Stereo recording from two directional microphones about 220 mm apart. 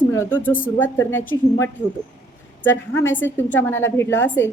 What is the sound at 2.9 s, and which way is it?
A woman's voice, 10° left (ahead or behind).